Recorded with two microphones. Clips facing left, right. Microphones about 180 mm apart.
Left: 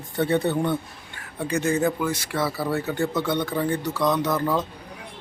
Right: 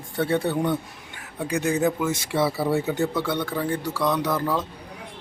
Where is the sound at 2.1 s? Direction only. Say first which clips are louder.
Right 3 dB; 25° right (ahead or behind).